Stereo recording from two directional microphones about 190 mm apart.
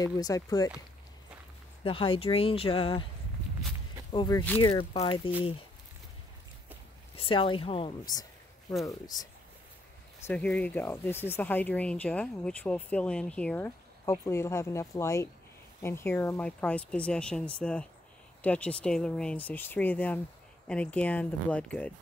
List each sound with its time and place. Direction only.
0.0 s speech: 20° left (ahead or behind)
1.9 s speech: 30° left (ahead or behind)
4.1 s speech: 25° left (ahead or behind)
7.2 s speech: 25° left (ahead or behind)
10.2 s speech: 5° left (ahead or behind)